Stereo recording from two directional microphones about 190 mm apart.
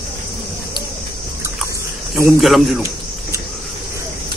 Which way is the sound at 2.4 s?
Centre (ahead or behind).